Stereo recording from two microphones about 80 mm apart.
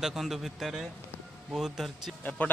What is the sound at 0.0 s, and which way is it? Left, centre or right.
A man's voice, centre.